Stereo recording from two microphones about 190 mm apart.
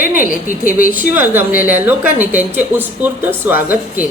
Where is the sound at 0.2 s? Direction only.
45° left (ahead or behind).